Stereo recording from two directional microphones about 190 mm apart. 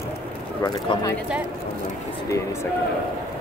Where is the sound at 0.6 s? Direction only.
20° left (ahead or behind).